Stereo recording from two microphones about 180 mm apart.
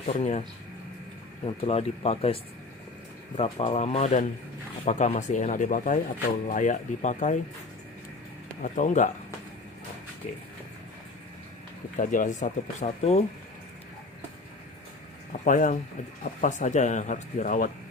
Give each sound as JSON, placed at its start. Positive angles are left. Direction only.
{"t": 0.0, "sound": "speech", "side_deg": 40}
{"t": 1.5, "sound": "speech", "side_deg": 35}
{"t": 8.6, "sound": "speech", "side_deg": 45}
{"t": 10.2, "sound": "speech", "side_deg": 45}
{"t": 11.9, "sound": "speech", "side_deg": 45}
{"t": 15.3, "sound": "speech", "side_deg": 45}